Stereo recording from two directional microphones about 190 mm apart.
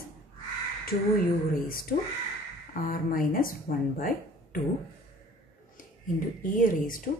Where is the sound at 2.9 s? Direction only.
45° left (ahead or behind).